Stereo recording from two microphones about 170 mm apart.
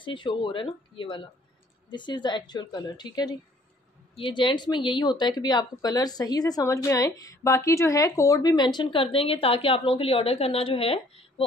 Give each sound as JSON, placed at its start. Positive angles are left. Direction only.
{"t": 0.0, "sound": "speech", "side_deg": 30}